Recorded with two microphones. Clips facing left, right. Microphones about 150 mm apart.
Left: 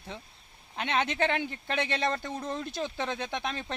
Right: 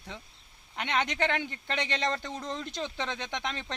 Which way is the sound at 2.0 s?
5° left (ahead or behind).